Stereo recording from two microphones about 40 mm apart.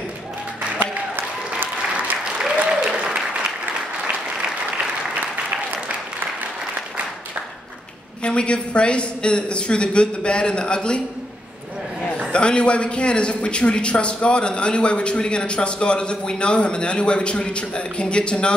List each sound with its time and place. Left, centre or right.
2.7 s applause: centre
8.2 s speech: left
12.3 s speech: left